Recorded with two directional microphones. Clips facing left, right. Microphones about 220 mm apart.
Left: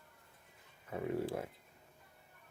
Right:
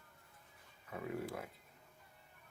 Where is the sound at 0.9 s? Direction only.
30° left (ahead or behind).